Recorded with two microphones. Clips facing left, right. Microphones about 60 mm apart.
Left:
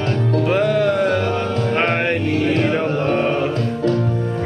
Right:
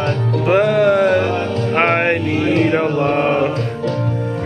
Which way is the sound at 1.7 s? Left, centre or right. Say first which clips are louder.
Right 5 dB; right.